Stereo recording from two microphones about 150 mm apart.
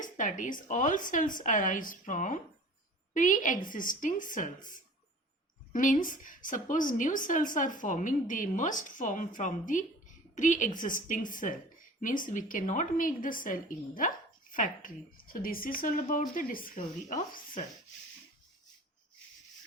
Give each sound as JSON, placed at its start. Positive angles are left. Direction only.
{"t": 0.0, "sound": "a woman's voice", "side_deg": 60}